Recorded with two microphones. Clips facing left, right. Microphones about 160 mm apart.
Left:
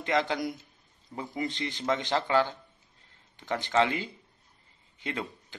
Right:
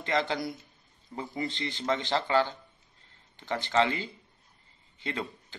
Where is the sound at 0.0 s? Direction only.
10° left (ahead or behind).